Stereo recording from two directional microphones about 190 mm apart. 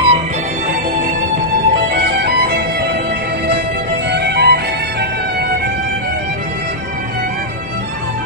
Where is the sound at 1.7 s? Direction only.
55° right (ahead or behind).